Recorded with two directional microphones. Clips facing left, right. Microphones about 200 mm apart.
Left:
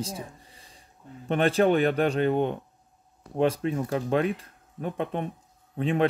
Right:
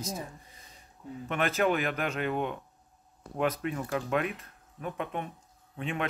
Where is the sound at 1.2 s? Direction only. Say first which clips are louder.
Left 6 dB; 30° left (ahead or behind).